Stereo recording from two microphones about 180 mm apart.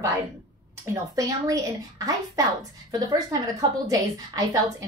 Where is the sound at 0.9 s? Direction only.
20° right (ahead or behind).